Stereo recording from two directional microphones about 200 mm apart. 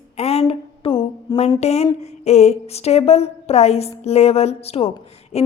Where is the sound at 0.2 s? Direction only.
30° left (ahead or behind).